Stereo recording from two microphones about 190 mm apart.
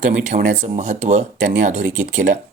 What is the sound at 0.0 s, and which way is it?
Speech, 40° right (ahead or behind).